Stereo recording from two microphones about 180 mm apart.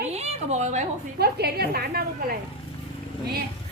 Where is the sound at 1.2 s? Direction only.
60° right (ahead or behind).